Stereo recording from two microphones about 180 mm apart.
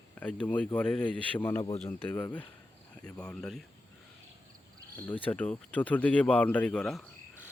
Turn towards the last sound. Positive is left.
turn(degrees=5)  # may be behind; listen again after turning